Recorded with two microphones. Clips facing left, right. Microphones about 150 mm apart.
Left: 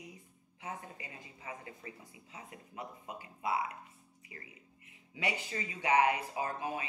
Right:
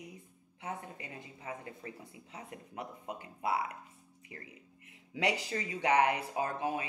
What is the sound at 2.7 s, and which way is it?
Speech, 65° right (ahead or behind).